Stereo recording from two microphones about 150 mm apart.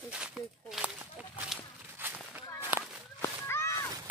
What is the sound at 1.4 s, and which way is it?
Walk, 10° right (ahead or behind).